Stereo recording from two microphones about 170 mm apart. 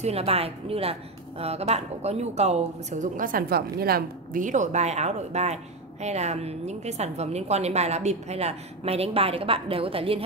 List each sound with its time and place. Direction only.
0.0 s a woman's voice: 35° right (ahead or behind)